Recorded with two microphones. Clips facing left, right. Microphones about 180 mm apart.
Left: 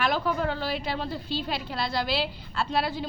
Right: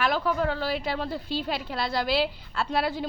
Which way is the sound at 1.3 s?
50° right (ahead or behind).